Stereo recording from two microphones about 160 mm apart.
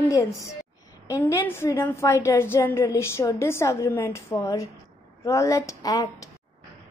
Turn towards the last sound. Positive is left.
turn(degrees=20)  # may be behind; listen again after turning